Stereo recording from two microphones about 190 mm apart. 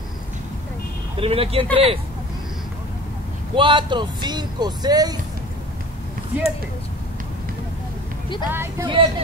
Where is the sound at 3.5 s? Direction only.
25° right (ahead or behind).